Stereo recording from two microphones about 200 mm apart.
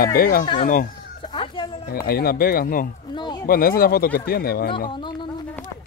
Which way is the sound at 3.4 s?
45° left (ahead or behind).